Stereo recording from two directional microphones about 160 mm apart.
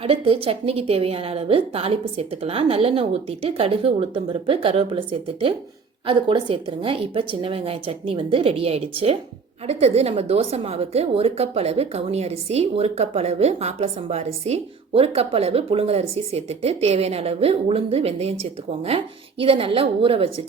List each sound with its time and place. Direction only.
0.0 s a woman's voice: 35° right (ahead or behind)